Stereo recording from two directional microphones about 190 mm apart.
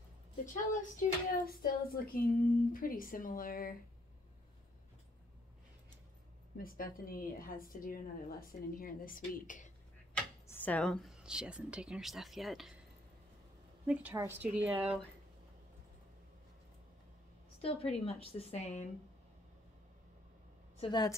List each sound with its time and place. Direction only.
0.5 s a woman's voice: 45° left (ahead or behind)
6.6 s a woman's voice: 50° left (ahead or behind)
10.1 s speech: 10° left (ahead or behind)
13.8 s speech: 10° right (ahead or behind)
17.6 s a woman's voice: 30° left (ahead or behind)
20.7 s a woman's voice: 25° left (ahead or behind)